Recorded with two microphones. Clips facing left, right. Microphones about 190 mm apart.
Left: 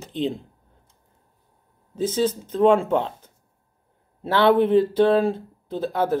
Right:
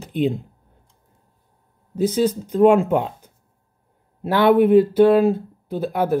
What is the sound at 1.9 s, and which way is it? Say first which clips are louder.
Speech: right 3 dB; 10° right (ahead or behind).